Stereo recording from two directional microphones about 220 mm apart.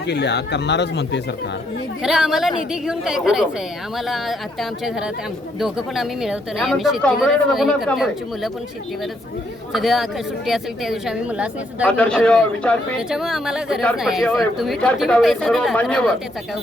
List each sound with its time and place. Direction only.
0.1 s speech: 50° left (ahead or behind)
2.0 s speech: centre (ahead or behind)
5.5 s speech: centre (ahead or behind)
9.7 s speech: centre (ahead or behind)